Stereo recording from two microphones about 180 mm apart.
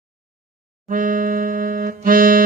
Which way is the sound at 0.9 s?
50° right (ahead or behind).